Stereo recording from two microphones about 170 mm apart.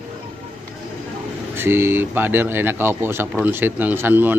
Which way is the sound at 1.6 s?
15° right (ahead or behind).